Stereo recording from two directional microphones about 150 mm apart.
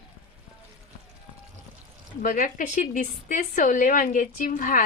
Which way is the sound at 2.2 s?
65° left (ahead or behind).